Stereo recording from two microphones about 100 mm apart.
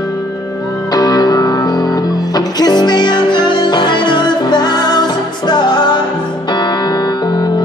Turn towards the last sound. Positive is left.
turn(degrees=45)  # may be behind; listen again after turning